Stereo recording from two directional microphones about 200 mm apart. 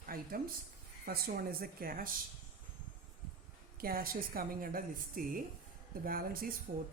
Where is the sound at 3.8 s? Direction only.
50° right (ahead or behind).